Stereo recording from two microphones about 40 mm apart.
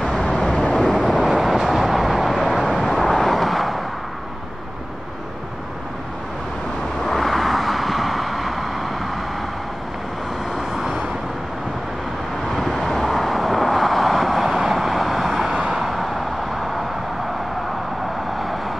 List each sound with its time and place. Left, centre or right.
0.4 s vehicle: centre
0.8 s vehicle: centre
7.1 s vehicle: centre
10.7 s vehicle: centre
12.4 s vehicle: centre
15.5 s vehicle: centre
15.8 s vehicle: centre